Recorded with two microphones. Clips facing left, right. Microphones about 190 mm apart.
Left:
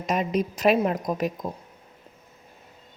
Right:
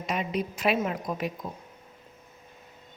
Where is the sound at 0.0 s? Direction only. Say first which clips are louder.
Left 5 dB; 45° left (ahead or behind).